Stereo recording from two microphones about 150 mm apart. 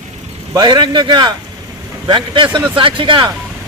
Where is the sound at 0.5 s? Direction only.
30° right (ahead or behind).